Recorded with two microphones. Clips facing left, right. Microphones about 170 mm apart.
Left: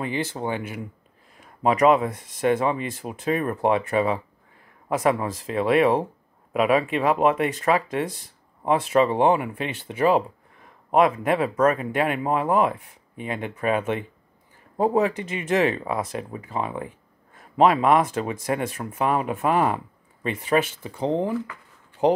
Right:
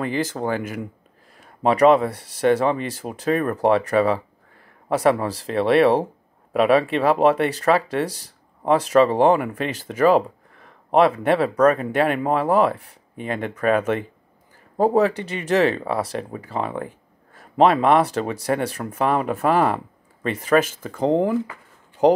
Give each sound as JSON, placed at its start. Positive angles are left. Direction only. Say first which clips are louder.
{"t": 0.0, "sound": "speech", "louder": "right 3 dB", "side_deg": -40}